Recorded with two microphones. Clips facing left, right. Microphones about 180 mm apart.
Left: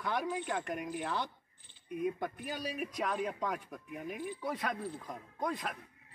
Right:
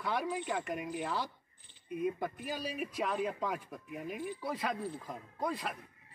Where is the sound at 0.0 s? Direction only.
5° right (ahead or behind).